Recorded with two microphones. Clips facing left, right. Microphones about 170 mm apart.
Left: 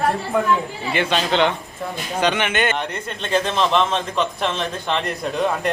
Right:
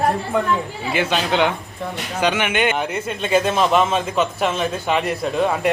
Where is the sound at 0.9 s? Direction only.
5° right (ahead or behind).